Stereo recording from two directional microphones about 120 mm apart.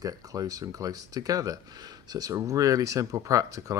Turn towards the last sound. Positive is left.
turn(degrees=-30)  # may be behind; listen again after turning